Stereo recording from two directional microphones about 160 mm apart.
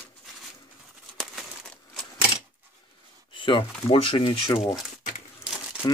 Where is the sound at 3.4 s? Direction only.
30° left (ahead or behind).